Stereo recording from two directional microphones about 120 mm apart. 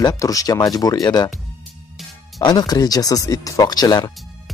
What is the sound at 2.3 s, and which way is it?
Speech, 35° left (ahead or behind).